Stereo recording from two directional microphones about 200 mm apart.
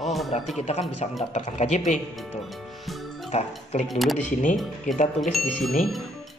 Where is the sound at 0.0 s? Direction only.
Centre (ahead or behind).